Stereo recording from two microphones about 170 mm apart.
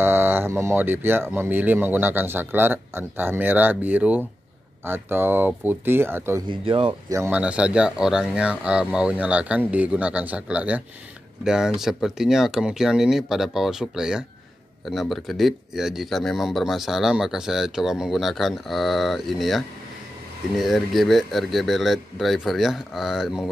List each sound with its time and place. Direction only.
0.0 s speech: 10° right (ahead or behind)
6.4 s speech: 30° right (ahead or behind)
7.2 s speech: 10° right (ahead or behind)